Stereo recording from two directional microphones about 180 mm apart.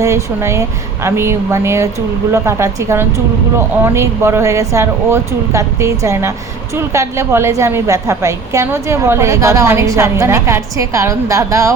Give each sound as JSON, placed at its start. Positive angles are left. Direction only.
{"t": 0.0, "sound": "a woman's voice", "side_deg": -15}